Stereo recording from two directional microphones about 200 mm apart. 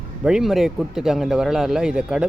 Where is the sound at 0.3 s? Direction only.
Centre (ahead or behind).